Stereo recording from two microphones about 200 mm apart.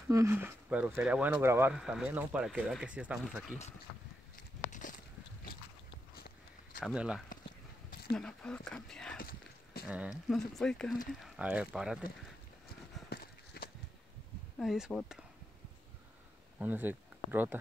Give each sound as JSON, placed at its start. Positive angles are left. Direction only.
{"t": 0.1, "sound": "speech", "side_deg": -15}
{"t": 4.6, "sound": "a sound", "side_deg": 40}
{"t": 6.1, "sound": "walk", "side_deg": 50}
{"t": 6.8, "sound": "speech", "side_deg": -5}
{"t": 9.2, "sound": "a sound", "side_deg": 50}
{"t": 9.8, "sound": "speech", "side_deg": -5}
{"t": 12.6, "sound": "clip-clop", "side_deg": 50}
{"t": 14.6, "sound": "speech", "side_deg": 0}
{"t": 16.5, "sound": "speech", "side_deg": -10}